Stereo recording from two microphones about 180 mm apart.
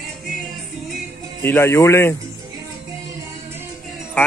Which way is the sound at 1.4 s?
15° left (ahead or behind).